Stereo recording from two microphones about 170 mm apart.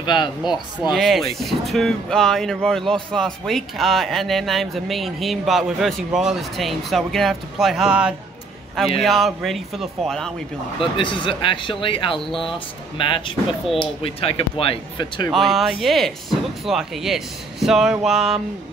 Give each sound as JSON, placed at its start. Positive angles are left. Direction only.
{"t": 0.0, "sound": "speech", "side_deg": 25}
{"t": 0.9, "sound": "speech", "side_deg": 0}
{"t": 10.8, "sound": "speech", "side_deg": 30}
{"t": 15.3, "sound": "speech", "side_deg": 0}